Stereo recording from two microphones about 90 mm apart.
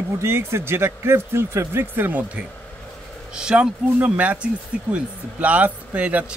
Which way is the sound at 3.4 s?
10° right (ahead or behind).